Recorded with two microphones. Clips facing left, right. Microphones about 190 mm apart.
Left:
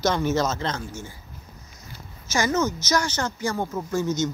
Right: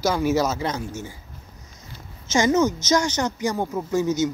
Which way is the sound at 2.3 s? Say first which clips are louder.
Right 4 dB; 20° right (ahead or behind).